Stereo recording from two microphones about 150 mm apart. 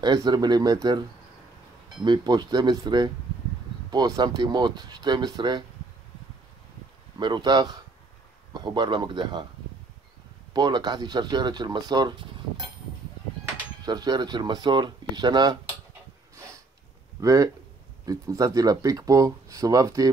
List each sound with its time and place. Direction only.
0.0 s speech: 30° right (ahead or behind)
2.0 s speech: 30° right (ahead or behind)
7.2 s speech: 30° right (ahead or behind)
10.5 s speech: 30° right (ahead or behind)
13.8 s speech: 25° right (ahead or behind)
17.2 s speech: 20° right (ahead or behind)